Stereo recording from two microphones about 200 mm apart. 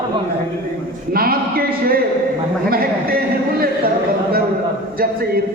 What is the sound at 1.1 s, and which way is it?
Speech, 50° right (ahead or behind).